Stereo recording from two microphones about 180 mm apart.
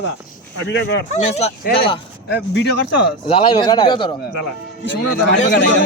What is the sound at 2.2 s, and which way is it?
Speech, 70° left (ahead or behind).